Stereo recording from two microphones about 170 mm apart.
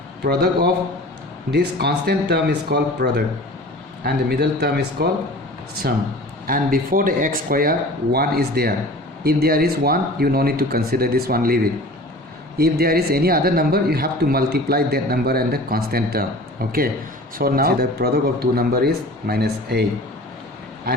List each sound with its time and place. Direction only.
0.3 s speech: 70° right (ahead or behind)
6.5 s speech: 55° right (ahead or behind)